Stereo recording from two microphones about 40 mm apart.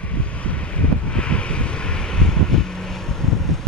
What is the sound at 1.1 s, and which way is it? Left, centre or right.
Vehicle, left.